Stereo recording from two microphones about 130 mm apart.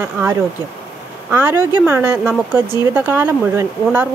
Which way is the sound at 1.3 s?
20° right (ahead or behind).